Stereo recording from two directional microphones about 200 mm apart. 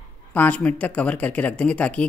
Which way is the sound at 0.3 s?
10° left (ahead or behind).